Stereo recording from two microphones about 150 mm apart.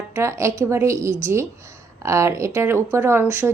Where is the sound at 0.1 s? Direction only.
20° right (ahead or behind).